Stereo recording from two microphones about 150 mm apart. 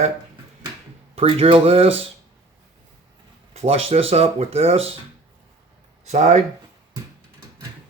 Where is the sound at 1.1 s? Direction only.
40° right (ahead or behind).